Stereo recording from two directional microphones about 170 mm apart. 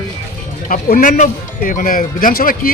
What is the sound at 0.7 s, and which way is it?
Speech, 55° left (ahead or behind).